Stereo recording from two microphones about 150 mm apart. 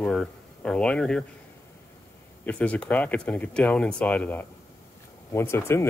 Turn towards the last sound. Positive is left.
turn(degrees=15)  # may be behind; listen again after turning